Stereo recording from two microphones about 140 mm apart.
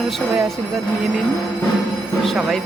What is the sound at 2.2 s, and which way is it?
Speech, centre (ahead or behind).